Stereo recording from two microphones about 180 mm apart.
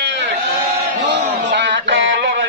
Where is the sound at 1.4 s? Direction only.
75° right (ahead or behind).